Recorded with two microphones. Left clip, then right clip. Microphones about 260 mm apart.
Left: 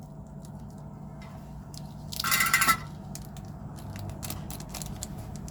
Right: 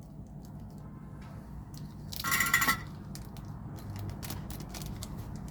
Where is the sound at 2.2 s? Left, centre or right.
Left.